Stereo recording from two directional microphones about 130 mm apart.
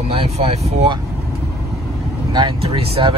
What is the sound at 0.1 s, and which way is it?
Speech, 50° right (ahead or behind).